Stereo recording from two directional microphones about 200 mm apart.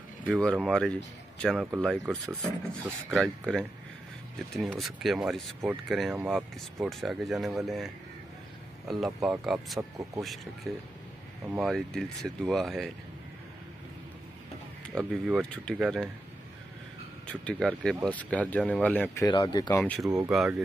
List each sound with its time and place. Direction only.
0.2 s speech: 5° left (ahead or behind)
3.2 s speech: 5° left (ahead or behind)
9.8 s speech: 15° right (ahead or behind)
10.2 s speech: centre (ahead or behind)
15.0 s speech: centre (ahead or behind)
17.3 s speech: 5° left (ahead or behind)
19.2 s speech: 20° left (ahead or behind)
19.8 s speech: centre (ahead or behind)